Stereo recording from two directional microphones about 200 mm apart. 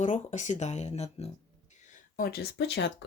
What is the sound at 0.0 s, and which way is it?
Speech, 40° left (ahead or behind).